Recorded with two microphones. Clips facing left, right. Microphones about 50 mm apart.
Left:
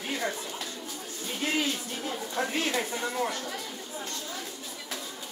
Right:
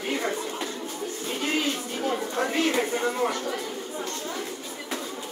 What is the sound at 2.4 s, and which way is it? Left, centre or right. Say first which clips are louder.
Speech: right 3 dB; right.